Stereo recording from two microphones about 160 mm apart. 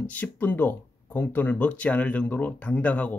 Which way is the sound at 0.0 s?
10° left (ahead or behind).